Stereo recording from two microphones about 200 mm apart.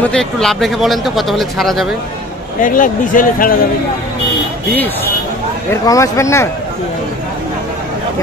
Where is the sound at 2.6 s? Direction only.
40° left (ahead or behind).